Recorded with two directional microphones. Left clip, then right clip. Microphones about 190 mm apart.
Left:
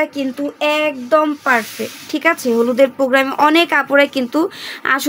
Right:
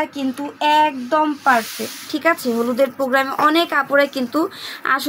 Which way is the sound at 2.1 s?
40° left (ahead or behind).